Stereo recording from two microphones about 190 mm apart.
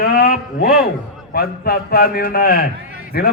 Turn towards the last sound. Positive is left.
turn(degrees=55)  # may be behind; listen again after turning